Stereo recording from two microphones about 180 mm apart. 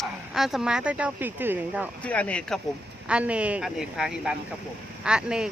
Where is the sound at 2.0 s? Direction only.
5° left (ahead or behind).